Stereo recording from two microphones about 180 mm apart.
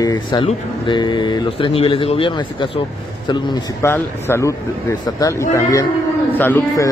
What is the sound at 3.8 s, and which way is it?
A man's voice, 10° left (ahead or behind).